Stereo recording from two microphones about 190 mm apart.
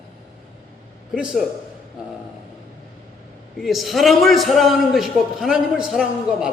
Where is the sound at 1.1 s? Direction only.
5° right (ahead or behind).